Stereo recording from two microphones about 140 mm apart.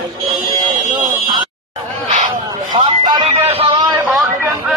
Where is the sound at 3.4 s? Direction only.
45° right (ahead or behind).